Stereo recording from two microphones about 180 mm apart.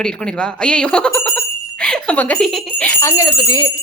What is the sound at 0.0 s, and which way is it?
Speech, 5° left (ahead or behind).